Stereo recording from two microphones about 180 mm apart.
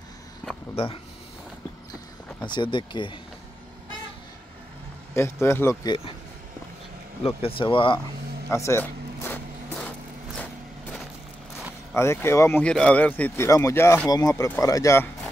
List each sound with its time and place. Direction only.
2.4 s speech: 25° left (ahead or behind)
5.1 s speech: 15° left (ahead or behind)
5.9 s speech: 30° left (ahead or behind)
7.2 s speech: 30° left (ahead or behind)
8.5 s a sound: 15° left (ahead or behind)
11.9 s speech: 15° left (ahead or behind)